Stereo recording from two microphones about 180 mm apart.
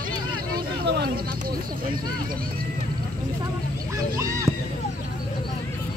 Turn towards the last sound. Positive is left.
turn(degrees=-15)  # may be behind; listen again after turning